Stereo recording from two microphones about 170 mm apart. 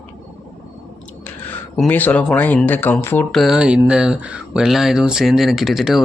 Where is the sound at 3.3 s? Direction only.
Centre (ahead or behind).